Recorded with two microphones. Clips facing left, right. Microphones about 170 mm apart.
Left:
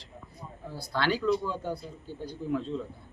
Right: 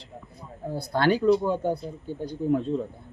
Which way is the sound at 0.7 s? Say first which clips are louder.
Right 6 dB; 50° right (ahead or behind).